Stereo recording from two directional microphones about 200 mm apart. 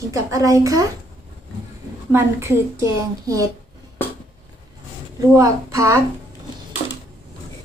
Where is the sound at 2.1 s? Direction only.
10° right (ahead or behind).